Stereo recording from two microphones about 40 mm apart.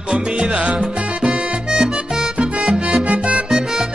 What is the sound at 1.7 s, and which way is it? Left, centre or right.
Music, centre.